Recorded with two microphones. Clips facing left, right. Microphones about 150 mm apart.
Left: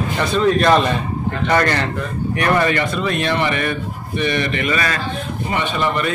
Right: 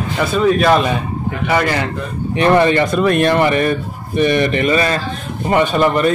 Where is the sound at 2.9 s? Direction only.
50° right (ahead or behind); by 5.0 s 30° right (ahead or behind).